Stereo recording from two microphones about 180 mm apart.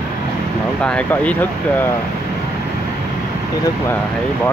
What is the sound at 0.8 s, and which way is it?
Speech, 5° left (ahead or behind).